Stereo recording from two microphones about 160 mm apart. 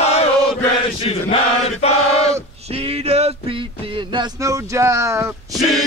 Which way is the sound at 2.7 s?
40° right (ahead or behind).